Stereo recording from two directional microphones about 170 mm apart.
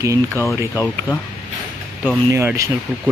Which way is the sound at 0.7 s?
10° left (ahead or behind).